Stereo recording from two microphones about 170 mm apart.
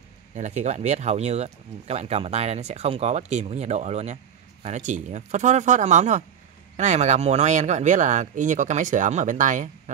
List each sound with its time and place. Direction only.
0.3 s speech: 45° right (ahead or behind)